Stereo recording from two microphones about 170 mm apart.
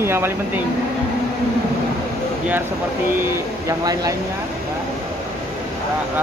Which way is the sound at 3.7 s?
20° right (ahead or behind).